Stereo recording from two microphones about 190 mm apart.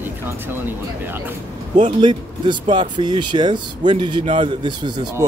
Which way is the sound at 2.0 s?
25° right (ahead or behind).